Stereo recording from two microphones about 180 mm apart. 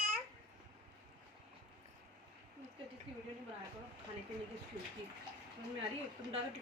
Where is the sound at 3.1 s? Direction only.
30° right (ahead or behind).